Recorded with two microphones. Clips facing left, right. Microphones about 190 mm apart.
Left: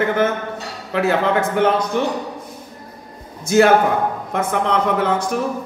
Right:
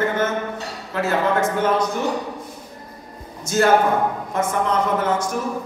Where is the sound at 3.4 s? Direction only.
65° left (ahead or behind).